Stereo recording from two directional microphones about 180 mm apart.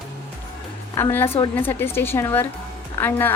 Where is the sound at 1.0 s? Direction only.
15° left (ahead or behind).